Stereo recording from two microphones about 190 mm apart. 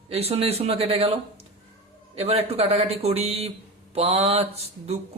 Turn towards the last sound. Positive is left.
turn(degrees=-35)  # may be behind; listen again after turning